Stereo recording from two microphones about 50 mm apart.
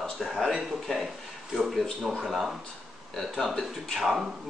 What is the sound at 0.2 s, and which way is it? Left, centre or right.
Speech, centre.